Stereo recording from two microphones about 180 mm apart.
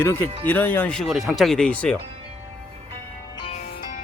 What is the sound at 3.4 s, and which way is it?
Music, 35° left (ahead or behind).